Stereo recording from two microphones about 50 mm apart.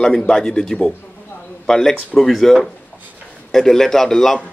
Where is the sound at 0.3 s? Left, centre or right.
Centre.